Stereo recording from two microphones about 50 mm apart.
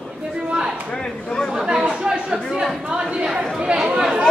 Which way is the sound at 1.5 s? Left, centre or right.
Centre.